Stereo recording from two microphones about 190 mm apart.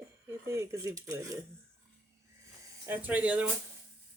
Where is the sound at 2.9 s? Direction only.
10° right (ahead or behind).